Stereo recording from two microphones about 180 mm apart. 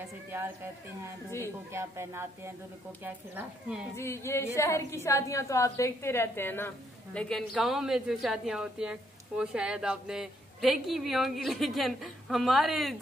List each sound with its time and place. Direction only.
0.3 s speech: 15° right (ahead or behind)
1.7 s a woman's voice: 15° right (ahead or behind)
3.9 s a woman's voice: 15° left (ahead or behind)